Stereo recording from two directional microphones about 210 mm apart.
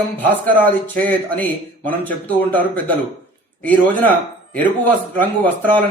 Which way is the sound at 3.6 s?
10° left (ahead or behind).